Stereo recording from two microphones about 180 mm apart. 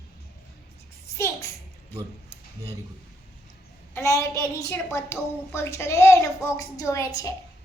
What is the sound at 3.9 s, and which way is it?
A woman's voice, 15° left (ahead or behind).